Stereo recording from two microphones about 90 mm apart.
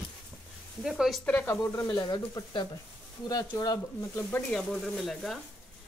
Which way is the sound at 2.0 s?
50° left (ahead or behind).